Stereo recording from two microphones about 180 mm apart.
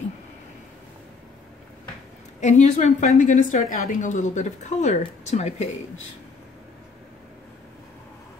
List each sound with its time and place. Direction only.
2.4 s a woman's voice: 40° left (ahead or behind)